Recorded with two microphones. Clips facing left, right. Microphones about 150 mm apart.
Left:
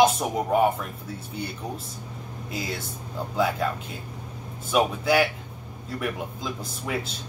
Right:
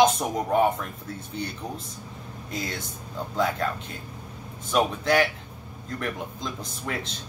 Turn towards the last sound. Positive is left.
turn(degrees=5)  # may be behind; listen again after turning